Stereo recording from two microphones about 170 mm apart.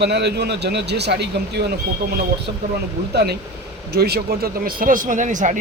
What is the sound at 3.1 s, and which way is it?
Speech, 70° right (ahead or behind).